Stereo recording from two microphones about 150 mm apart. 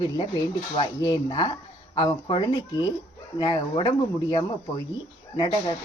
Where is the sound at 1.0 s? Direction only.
30° left (ahead or behind).